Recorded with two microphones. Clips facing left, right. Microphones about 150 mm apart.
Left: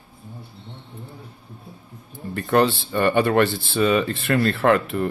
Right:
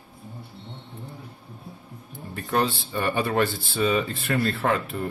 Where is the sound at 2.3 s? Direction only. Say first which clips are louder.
Left 6 dB; 70° left (ahead or behind).